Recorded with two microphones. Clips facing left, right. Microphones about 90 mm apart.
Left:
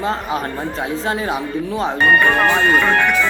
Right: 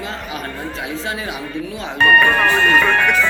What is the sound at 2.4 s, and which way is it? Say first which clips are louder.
Speech: even; 5° left (ahead or behind).